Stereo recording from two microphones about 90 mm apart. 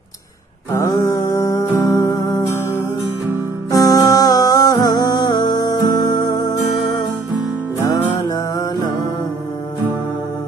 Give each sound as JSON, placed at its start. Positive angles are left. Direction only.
{"t": 0.8, "sound": "music", "side_deg": 40}
{"t": 2.0, "sound": "music", "side_deg": 45}
{"t": 3.7, "sound": "music", "side_deg": 45}